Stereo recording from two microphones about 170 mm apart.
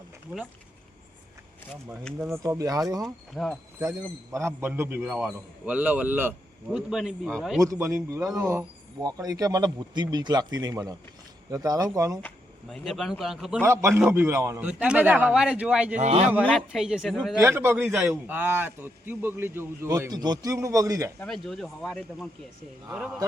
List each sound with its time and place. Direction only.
0.3 s a man's voice: 5° right (ahead or behind)
2.1 s speech: 15° right (ahead or behind)
3.3 s speech: centre (ahead or behind)
3.8 s a man's voice: 15° right (ahead or behind); by 7.6 s centre (ahead or behind)
7.6 s speech: 20° right (ahead or behind)
12.6 s speech: centre (ahead or behind)
13.6 s a man's voice: 15° right (ahead or behind)
16.0 s speech: 40° right (ahead or behind)
16.4 s speech: 5° left (ahead or behind)
17.4 s a man's voice: 15° right (ahead or behind)
21.2 s speech: centre (ahead or behind)